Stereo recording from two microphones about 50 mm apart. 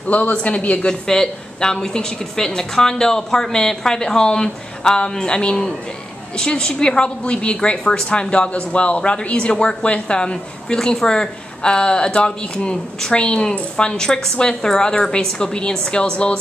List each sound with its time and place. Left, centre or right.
0.1 s a woman's voice: left
1.0 s a woman's voice: centre